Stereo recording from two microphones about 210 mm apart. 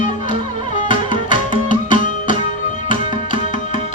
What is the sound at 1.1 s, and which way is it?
Tabla, 35° left (ahead or behind).